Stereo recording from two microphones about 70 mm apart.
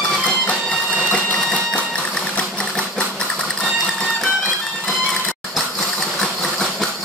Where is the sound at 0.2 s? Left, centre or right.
Centre.